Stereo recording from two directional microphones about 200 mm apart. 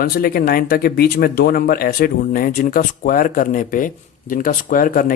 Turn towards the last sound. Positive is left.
turn(degrees=45)  # may be behind; listen again after turning